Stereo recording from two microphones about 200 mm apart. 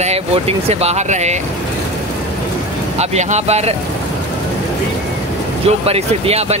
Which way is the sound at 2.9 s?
35° right (ahead or behind).